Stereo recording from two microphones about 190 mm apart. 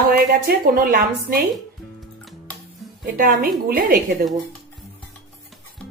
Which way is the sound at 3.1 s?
45° right (ahead or behind).